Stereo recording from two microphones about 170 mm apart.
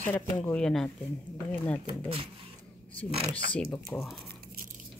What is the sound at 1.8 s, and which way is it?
Speech, 30° right (ahead or behind).